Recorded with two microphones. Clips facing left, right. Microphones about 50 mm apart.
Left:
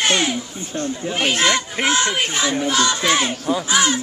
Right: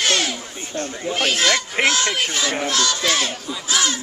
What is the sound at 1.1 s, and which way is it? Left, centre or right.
Speech, centre.